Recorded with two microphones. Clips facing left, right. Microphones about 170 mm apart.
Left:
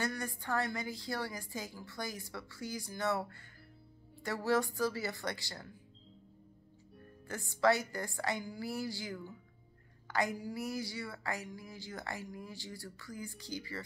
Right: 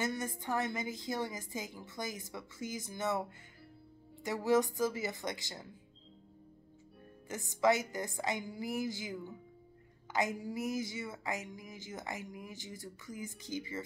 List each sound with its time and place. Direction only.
0.0 s a woman's voice: 20° right (ahead or behind)
7.2 s a woman's voice: 20° right (ahead or behind)